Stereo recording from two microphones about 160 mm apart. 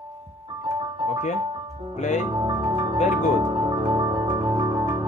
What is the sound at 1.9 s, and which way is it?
Mantra, 50° left (ahead or behind).